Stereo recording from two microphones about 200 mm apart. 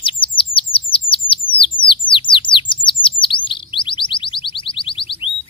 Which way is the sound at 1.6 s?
25° left (ahead or behind).